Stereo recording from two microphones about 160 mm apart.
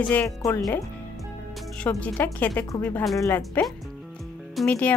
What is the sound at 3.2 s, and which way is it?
Speech, 15° left (ahead or behind).